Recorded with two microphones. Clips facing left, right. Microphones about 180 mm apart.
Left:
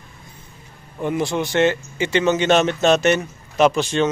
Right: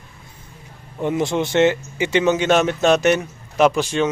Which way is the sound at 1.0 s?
20° right (ahead or behind).